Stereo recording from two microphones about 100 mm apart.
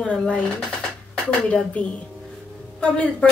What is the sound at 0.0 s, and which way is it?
Speech, 10° left (ahead or behind).